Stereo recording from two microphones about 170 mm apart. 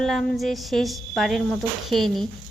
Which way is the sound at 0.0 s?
Centre (ahead or behind).